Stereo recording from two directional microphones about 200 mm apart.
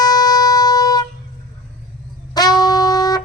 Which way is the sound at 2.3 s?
20° left (ahead or behind).